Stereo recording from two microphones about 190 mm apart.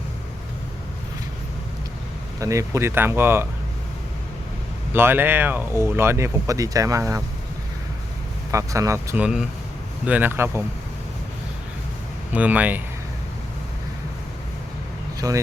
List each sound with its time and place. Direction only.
2.4 s speech: 15° right (ahead or behind)
4.9 s speech: 10° right (ahead or behind)
8.4 s speech: 15° right (ahead or behind)
12.3 s speech: 10° right (ahead or behind)
15.2 s speech: 20° right (ahead or behind)